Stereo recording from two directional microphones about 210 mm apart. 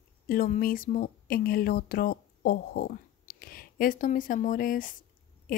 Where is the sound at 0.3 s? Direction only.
45° left (ahead or behind).